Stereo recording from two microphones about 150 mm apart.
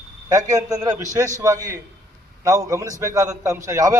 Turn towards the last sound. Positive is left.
turn(degrees=-20)  # may be behind; listen again after turning